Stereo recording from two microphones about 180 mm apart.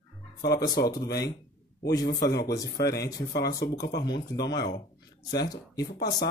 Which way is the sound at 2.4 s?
20° left (ahead or behind).